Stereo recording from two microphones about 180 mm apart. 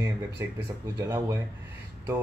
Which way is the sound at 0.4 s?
15° right (ahead or behind).